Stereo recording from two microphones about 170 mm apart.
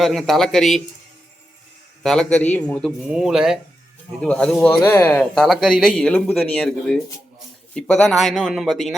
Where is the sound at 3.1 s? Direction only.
5° right (ahead or behind).